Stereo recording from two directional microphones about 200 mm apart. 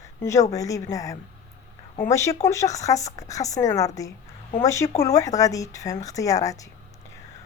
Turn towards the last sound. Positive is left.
turn(degrees=15)  # may be behind; listen again after turning